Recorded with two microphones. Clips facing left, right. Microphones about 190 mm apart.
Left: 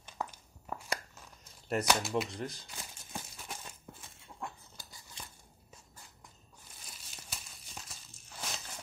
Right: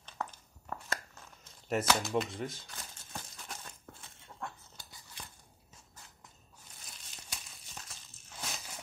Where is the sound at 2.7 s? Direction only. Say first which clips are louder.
Left 1 dB; 10° left (ahead or behind).